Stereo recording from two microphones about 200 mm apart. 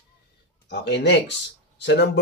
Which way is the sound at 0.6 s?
60° left (ahead or behind).